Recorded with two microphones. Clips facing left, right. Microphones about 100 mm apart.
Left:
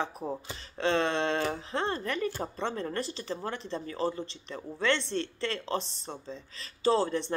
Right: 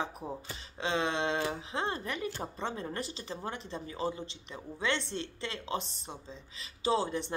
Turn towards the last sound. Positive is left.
turn(degrees=-15)  # may be behind; listen again after turning